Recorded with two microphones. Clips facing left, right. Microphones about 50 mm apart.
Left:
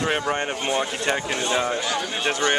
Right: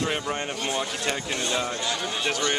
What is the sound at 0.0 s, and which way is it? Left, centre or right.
Speech, left.